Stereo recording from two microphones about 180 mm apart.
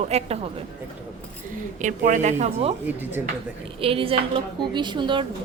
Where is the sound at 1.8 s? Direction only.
45° right (ahead or behind).